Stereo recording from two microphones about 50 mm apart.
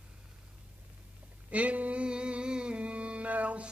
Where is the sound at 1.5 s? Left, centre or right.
Right.